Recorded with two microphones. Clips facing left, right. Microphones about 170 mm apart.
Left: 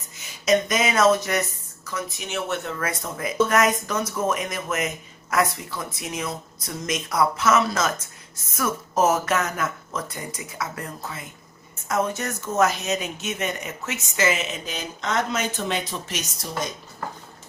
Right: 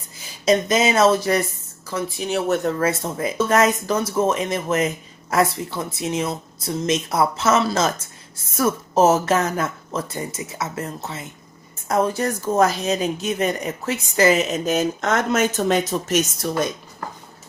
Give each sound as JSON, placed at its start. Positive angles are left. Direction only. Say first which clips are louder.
{"t": 0.2, "sound": "speech", "louder": "right 2 dB", "side_deg": -30}